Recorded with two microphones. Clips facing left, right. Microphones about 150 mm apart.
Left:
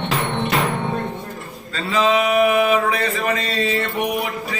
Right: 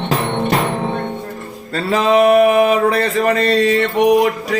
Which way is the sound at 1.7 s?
50° right (ahead or behind).